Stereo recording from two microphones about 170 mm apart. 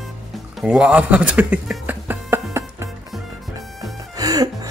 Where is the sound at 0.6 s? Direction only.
5° right (ahead or behind).